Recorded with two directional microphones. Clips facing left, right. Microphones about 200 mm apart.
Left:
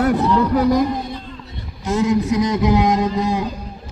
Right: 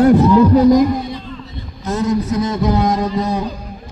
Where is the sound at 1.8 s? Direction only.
10° left (ahead or behind).